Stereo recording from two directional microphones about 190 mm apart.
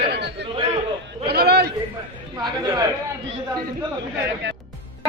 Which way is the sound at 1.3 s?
55° right (ahead or behind).